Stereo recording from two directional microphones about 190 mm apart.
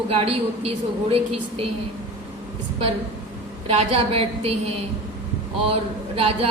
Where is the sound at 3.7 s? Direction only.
35° right (ahead or behind).